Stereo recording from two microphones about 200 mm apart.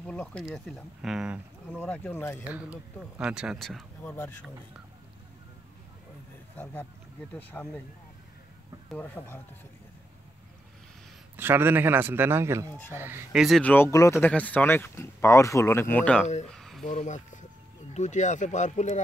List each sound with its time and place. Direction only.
0.0 s speech: 5° left (ahead or behind)
1.7 s speech: 10° left (ahead or behind)
2.4 s speech: 5° right (ahead or behind)
6.5 s speech: 10° left (ahead or behind)
8.9 s speech: 10° left (ahead or behind)
11.3 s a man's voice: 10° right (ahead or behind); by 16.3 s 5° left (ahead or behind)
16.4 s a sound: centre (ahead or behind)
16.8 s speech: 40° left (ahead or behind)